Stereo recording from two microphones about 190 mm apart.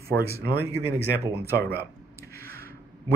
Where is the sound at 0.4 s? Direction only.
60° right (ahead or behind).